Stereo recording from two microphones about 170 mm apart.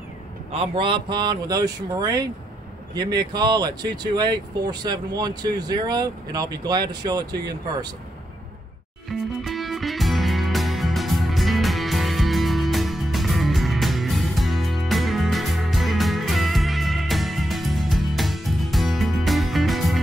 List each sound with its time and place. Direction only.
0.5 s speech: 35° right (ahead or behind)
9.4 s music: centre (ahead or behind)